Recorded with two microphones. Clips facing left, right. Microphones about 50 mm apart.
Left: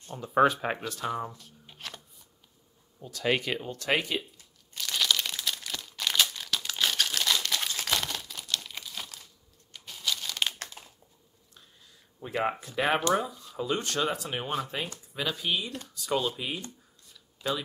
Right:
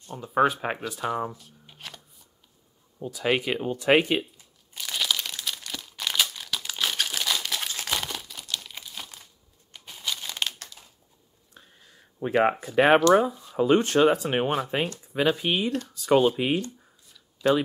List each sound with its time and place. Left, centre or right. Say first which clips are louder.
0.1 s speech: right 1 dB; centre
1.3 s shuffling cards: right 3 dB; centre
3.1 s speech: right 3 dB; centre
4.4 s crumpling: even; centre
10.8 s a sound: left 3 dB; left
11.8 s a sound: right 11 dB; right
12.7 s speech: right 9 dB; right